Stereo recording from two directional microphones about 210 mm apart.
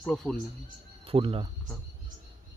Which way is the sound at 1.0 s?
25° right (ahead or behind).